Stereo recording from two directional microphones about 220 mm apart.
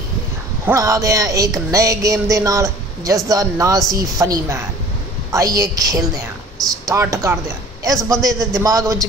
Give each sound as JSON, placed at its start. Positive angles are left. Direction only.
{"t": 0.7, "sound": "speech", "side_deg": -15}